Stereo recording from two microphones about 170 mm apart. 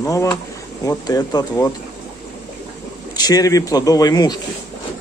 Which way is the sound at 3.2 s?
20° left (ahead or behind).